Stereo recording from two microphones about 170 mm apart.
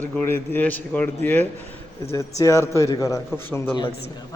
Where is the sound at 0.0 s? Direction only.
10° left (ahead or behind).